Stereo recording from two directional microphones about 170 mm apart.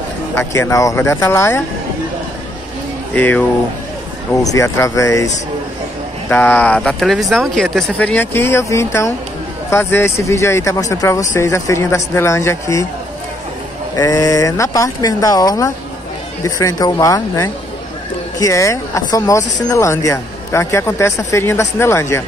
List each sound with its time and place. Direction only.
0.4 s speech: 15° left (ahead or behind)
3.2 s speech: 10° left (ahead or behind)
13.9 s speech: 20° left (ahead or behind)